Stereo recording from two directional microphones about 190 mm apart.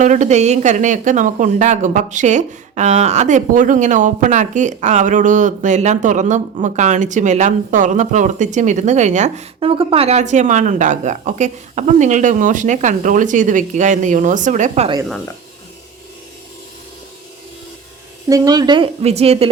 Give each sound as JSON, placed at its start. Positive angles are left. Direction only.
{"t": 0.0, "sound": "speech", "side_deg": -40}
{"t": 18.3, "sound": "speech", "side_deg": -20}